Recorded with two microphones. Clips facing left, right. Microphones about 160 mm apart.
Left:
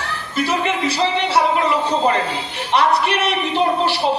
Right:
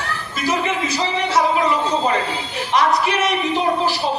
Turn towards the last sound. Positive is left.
turn(degrees=65)  # may be behind; listen again after turning